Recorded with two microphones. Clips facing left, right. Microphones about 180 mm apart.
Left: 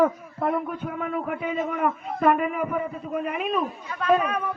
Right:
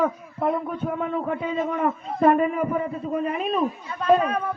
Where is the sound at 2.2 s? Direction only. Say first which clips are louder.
Right 3 dB; 35° right (ahead or behind).